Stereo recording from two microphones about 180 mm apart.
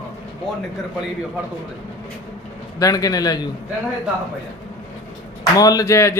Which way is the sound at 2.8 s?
20° left (ahead or behind).